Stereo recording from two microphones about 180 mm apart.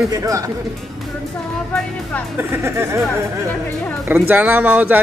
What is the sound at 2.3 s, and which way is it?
Speech, 10° right (ahead or behind).